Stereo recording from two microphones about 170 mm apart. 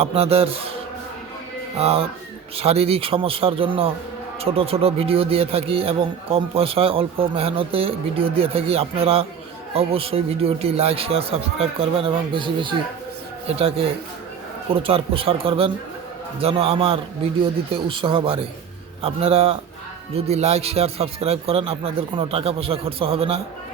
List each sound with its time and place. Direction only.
0.0 s speech: 35° right (ahead or behind)
1.8 s speech: 35° right (ahead or behind)